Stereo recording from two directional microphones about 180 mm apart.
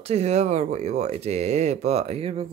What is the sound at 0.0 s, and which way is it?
Speech, 35° right (ahead or behind).